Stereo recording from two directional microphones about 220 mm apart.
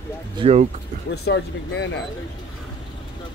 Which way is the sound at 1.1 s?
55° left (ahead or behind).